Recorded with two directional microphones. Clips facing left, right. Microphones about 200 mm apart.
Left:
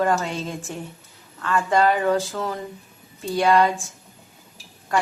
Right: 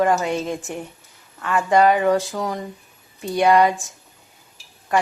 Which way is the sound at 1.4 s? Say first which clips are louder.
Right 3 dB; 15° right (ahead or behind).